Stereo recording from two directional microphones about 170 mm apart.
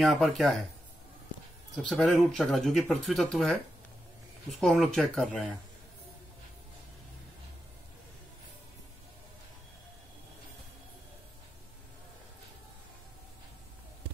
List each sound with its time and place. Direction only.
0.0 s speech: centre (ahead or behind)
1.8 s speech: centre (ahead or behind)
4.6 s speech: centre (ahead or behind)